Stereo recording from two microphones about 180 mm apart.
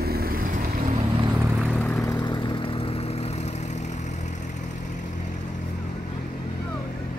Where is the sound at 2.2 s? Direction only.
25° left (ahead or behind).